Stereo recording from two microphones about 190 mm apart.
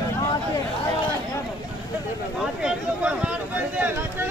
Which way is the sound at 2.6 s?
5° right (ahead or behind).